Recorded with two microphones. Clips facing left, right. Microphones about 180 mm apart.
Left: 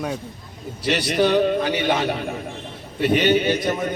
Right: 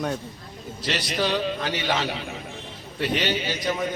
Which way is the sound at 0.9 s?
60° left (ahead or behind).